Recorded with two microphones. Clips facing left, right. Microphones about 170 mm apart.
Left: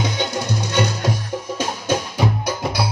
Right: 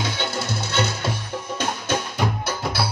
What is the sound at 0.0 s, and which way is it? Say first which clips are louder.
Music: left 4 dB; 15° left (ahead or behind).